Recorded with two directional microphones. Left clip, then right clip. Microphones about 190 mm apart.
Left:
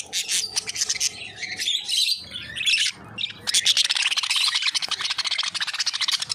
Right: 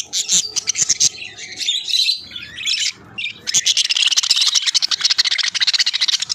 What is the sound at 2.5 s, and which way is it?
Bird, 30° left (ahead or behind).